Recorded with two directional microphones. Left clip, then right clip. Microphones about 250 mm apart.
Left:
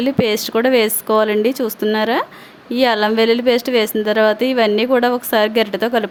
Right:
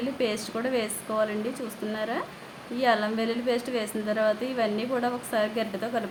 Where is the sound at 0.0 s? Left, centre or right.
Left.